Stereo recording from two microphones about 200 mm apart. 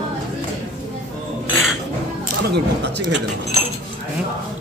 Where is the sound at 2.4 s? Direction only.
55° right (ahead or behind).